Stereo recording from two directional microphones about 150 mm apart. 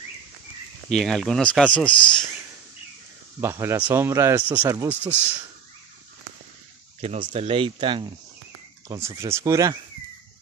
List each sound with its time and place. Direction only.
0.8 s speech: 5° left (ahead or behind)
3.3 s speech: 15° right (ahead or behind)
7.0 s speech: 45° right (ahead or behind)
8.8 s speech: 20° right (ahead or behind)